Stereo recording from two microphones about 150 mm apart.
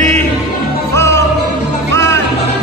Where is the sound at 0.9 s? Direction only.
20° left (ahead or behind).